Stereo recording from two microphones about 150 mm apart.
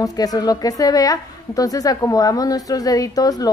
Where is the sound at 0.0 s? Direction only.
25° left (ahead or behind).